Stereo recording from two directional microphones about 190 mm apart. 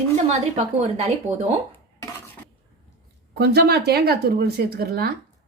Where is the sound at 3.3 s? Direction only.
55° right (ahead or behind).